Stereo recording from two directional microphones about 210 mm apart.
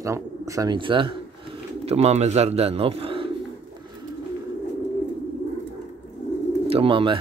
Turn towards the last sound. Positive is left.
turn(degrees=-25)  # may be behind; listen again after turning